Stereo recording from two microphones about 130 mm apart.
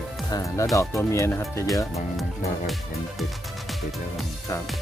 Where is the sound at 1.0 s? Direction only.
20° left (ahead or behind).